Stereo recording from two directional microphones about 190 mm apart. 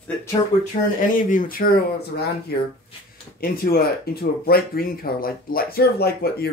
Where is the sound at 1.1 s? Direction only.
45° left (ahead or behind).